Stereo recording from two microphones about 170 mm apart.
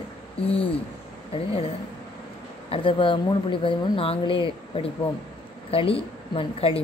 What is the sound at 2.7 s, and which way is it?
Speech, 30° left (ahead or behind).